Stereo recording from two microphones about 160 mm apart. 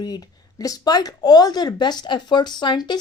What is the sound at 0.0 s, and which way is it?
A woman's voice, 25° left (ahead or behind).